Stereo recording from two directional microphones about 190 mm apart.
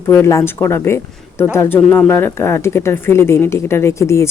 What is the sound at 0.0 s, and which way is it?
Speech, 15° left (ahead or behind).